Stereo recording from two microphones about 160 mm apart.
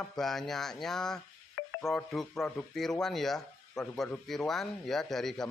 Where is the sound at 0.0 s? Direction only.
Centre (ahead or behind).